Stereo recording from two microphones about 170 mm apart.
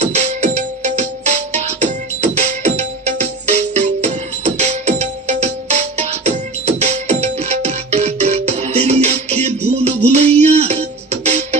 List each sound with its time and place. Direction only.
0.0 s music: 45° right (ahead or behind)